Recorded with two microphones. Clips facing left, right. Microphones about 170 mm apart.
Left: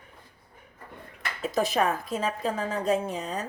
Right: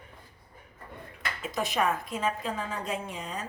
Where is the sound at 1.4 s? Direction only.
35° left (ahead or behind).